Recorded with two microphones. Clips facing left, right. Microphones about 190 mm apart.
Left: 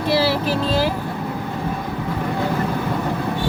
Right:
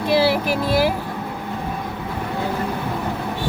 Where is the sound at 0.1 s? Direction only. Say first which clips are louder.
Right 1 dB; 15° right (ahead or behind).